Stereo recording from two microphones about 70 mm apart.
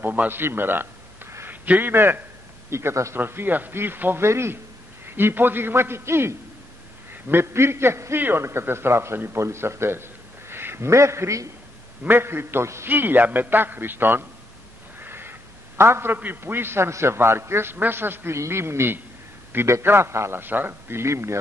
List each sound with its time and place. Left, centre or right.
0.0 s a sound: right
1.7 s a man's voice: right
3.2 s a man's voice: right
12.0 s a man's voice: right
15.0 s a sound: right
15.8 s a man's voice: right